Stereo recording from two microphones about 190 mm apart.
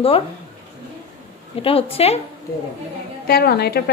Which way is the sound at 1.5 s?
30° left (ahead or behind).